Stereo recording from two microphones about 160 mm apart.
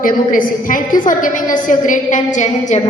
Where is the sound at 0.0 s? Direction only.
60° left (ahead or behind).